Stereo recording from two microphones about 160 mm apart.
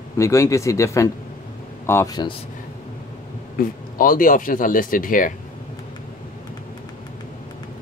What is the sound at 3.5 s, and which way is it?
Speech, 60° left (ahead or behind).